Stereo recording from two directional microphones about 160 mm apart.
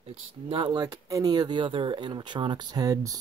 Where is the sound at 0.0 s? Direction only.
35° right (ahead or behind).